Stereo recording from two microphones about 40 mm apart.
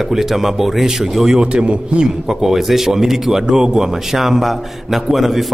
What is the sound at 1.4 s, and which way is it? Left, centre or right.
Speech, right.